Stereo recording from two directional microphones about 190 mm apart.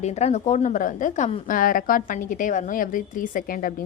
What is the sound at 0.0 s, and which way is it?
A woman's voice, 35° left (ahead or behind).